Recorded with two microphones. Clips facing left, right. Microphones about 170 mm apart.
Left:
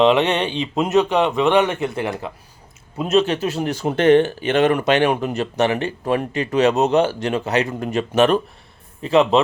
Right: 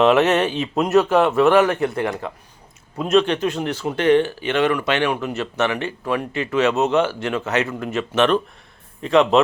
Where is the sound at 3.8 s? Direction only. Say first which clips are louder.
Left 3 dB; 45° left (ahead or behind).